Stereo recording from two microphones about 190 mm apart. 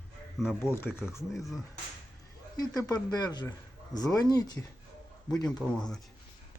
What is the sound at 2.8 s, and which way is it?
Speech, 20° left (ahead or behind).